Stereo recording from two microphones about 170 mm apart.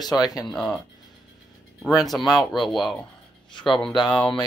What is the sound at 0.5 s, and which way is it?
Speech, centre (ahead or behind).